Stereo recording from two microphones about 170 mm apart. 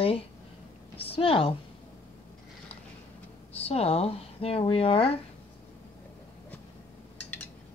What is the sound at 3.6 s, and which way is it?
Speech, 35° left (ahead or behind).